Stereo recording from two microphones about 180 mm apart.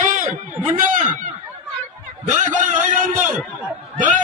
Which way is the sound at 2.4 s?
45° right (ahead or behind).